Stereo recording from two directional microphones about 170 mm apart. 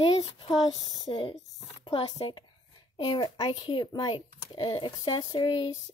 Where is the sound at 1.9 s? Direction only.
35° left (ahead or behind).